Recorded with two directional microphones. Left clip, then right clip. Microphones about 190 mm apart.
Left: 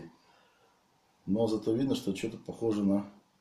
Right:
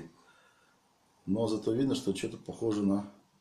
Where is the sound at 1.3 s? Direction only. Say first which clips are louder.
Left 1 dB; 10° right (ahead or behind).